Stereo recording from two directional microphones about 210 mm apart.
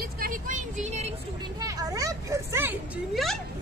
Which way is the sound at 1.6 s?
15° right (ahead or behind).